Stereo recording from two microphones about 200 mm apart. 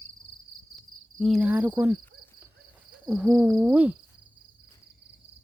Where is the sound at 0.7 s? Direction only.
Centre (ahead or behind).